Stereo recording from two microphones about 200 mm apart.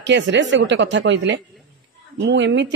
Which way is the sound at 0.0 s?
60° right (ahead or behind).